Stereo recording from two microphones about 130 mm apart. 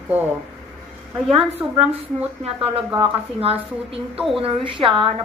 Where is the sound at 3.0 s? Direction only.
45° right (ahead or behind).